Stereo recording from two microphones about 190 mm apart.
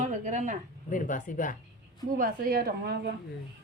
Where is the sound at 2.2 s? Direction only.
50° right (ahead or behind).